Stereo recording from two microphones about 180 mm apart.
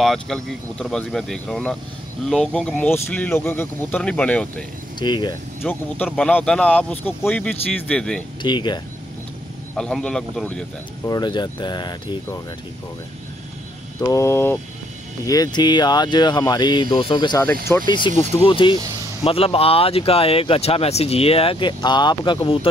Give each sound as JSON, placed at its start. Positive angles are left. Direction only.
{"t": 0.0, "sound": "speech", "side_deg": 0}
{"t": 4.9, "sound": "speech", "side_deg": 25}
{"t": 5.6, "sound": "speech", "side_deg": 10}
{"t": 8.4, "sound": "speech", "side_deg": 25}
{"t": 9.8, "sound": "speech", "side_deg": 5}
{"t": 11.1, "sound": "speech", "side_deg": 25}
{"t": 14.0, "sound": "speech", "side_deg": 15}